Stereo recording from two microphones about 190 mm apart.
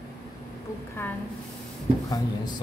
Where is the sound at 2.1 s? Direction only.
20° left (ahead or behind).